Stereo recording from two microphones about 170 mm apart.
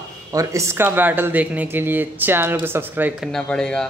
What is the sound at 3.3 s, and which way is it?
Speech, 5° left (ahead or behind).